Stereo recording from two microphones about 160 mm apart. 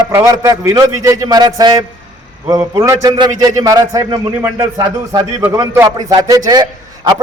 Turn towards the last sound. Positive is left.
turn(degrees=-25)  # may be behind; listen again after turning